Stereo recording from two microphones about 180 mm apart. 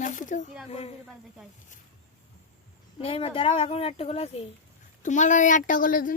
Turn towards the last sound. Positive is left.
turn(degrees=50)  # may be behind; listen again after turning